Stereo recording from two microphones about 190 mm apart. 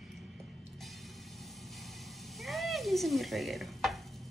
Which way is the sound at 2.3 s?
Centre (ahead or behind).